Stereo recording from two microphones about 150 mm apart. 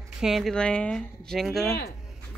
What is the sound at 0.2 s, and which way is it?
Speech, centre (ahead or behind).